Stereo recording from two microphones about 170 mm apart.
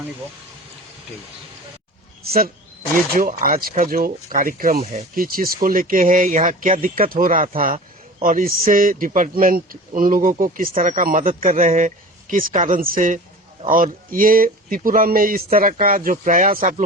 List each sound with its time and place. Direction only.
2.2 s a man's voice: 65° right (ahead or behind)